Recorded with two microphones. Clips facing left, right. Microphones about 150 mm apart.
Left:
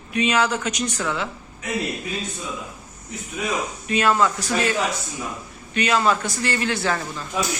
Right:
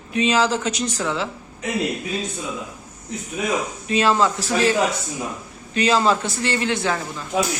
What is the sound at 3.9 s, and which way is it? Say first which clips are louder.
A man's voice: right 1 dB; 25° right (ahead or behind).